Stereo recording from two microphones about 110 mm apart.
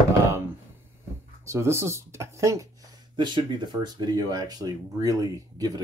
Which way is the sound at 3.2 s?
45° right (ahead or behind).